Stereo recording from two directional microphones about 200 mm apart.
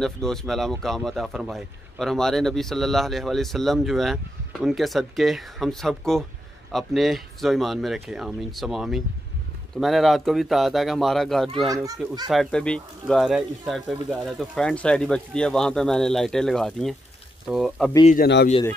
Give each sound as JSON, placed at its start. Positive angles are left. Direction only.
{"t": 0.0, "sound": "speech", "side_deg": 0}
{"t": 18.0, "sound": "a man's voice", "side_deg": 45}